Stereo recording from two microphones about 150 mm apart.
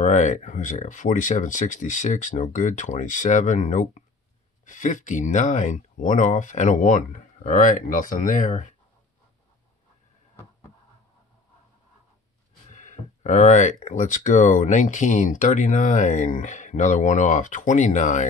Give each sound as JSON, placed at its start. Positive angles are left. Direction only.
{"t": 0.0, "sound": "speech", "side_deg": 55}
{"t": 12.6, "sound": "speech", "side_deg": 55}